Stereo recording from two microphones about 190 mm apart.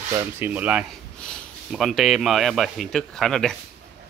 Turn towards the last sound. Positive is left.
turn(degrees=0)  # may be behind; listen again after turning